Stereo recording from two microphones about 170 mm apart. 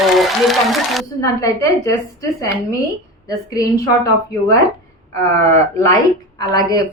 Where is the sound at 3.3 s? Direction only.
20° left (ahead or behind).